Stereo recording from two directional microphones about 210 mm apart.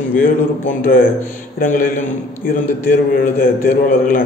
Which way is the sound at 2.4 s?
40° left (ahead or behind).